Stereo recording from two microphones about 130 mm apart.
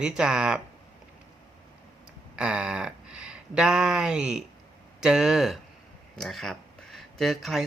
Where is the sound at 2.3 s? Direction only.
5° right (ahead or behind).